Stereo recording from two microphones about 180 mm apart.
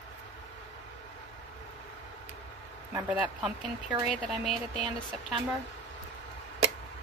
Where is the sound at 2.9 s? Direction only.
5° right (ahead or behind).